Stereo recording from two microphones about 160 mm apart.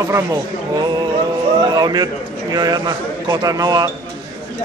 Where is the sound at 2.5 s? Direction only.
25° right (ahead or behind).